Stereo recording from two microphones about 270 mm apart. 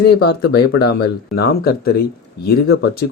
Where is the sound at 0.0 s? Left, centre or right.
Left.